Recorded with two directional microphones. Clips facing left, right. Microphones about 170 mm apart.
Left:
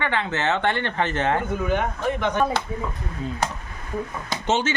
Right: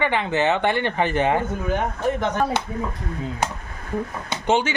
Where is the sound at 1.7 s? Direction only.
40° right (ahead or behind).